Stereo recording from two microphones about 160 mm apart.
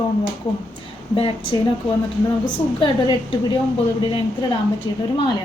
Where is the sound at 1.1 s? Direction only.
35° left (ahead or behind).